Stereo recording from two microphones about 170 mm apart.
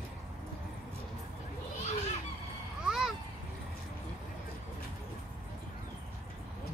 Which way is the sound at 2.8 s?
5° right (ahead or behind).